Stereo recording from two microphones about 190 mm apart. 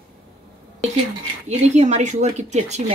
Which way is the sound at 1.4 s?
35° right (ahead or behind).